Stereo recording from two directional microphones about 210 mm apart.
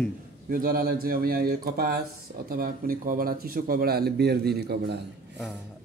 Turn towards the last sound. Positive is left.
turn(degrees=-50)  # may be behind; listen again after turning